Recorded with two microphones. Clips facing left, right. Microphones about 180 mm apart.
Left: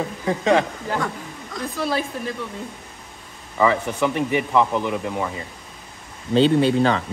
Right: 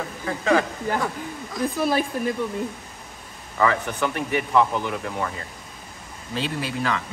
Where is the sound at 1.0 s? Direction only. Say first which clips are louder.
Right 1 dB; 5° right (ahead or behind).